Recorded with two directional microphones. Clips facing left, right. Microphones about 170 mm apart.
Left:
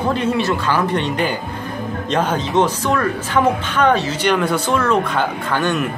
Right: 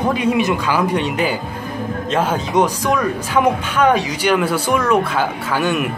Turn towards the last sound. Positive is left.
turn(degrees=-10)  # may be behind; listen again after turning